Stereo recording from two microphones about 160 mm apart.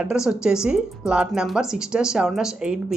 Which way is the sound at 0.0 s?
5° right (ahead or behind).